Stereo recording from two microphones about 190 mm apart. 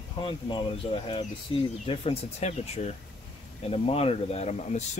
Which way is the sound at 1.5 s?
25° left (ahead or behind).